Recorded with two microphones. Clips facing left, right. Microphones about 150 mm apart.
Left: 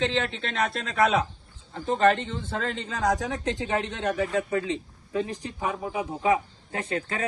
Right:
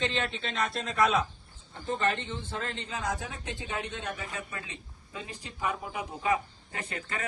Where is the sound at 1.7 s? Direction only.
90° left.